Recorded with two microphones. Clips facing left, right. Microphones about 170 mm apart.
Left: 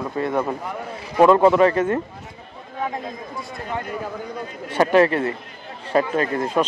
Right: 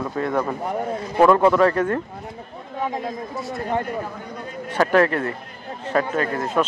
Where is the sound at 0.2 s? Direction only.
10° left (ahead or behind).